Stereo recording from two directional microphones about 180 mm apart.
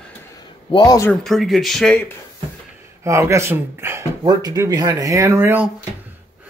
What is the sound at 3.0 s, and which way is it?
Speech, 15° right (ahead or behind).